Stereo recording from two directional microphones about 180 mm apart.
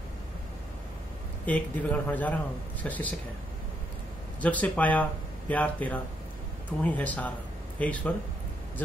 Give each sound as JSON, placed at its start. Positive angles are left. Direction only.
{"t": 1.4, "sound": "a man's voice", "side_deg": 10}
{"t": 4.4, "sound": "a man's voice", "side_deg": 10}